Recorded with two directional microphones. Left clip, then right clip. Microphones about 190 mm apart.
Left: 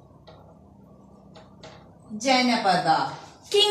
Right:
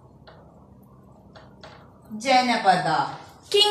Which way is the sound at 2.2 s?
Centre (ahead or behind).